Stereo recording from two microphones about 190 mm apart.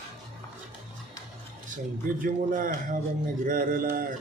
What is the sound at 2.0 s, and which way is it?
A man's voice, 45° right (ahead or behind).